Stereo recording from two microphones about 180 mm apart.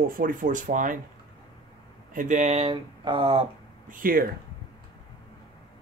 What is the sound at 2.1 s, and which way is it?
Speech, 45° right (ahead or behind).